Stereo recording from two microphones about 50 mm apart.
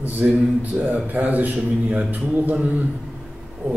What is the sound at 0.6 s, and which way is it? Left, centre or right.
A man's voice, right.